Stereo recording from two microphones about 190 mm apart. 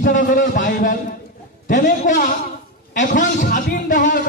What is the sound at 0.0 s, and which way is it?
A man's voice, 45° left (ahead or behind).